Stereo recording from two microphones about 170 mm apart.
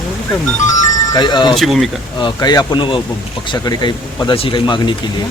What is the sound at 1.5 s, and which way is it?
Speech, centre (ahead or behind).